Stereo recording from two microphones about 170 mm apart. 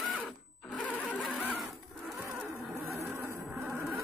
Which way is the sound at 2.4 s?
10° right (ahead or behind).